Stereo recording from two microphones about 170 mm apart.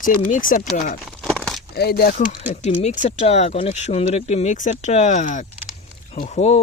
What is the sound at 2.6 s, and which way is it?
Speech, 45° left (ahead or behind).